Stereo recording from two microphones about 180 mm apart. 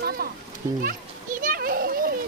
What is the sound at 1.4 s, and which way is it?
Children playing, 55° right (ahead or behind).